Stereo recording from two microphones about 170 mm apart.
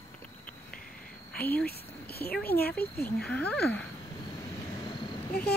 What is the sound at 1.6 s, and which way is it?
Speech, 65° left (ahead or behind).